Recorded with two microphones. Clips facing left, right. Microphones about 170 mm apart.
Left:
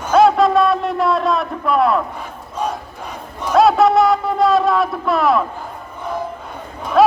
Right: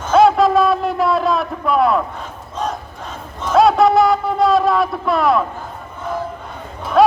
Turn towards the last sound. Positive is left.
turn(degrees=0)  # may be behind; listen again after turning